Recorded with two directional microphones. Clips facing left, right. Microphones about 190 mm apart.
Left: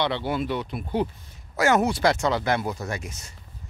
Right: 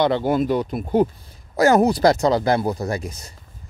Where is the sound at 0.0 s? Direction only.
45° right (ahead or behind).